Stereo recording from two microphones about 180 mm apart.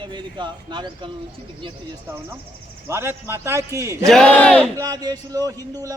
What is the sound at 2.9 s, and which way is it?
A man's voice, 15° right (ahead or behind).